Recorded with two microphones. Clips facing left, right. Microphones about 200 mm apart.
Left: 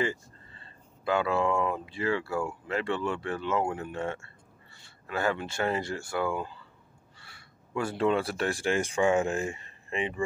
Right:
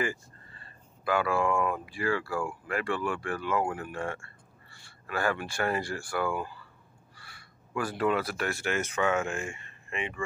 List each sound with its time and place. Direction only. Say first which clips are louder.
0.0 s speech: left 2 dB; 25° left (ahead or behind)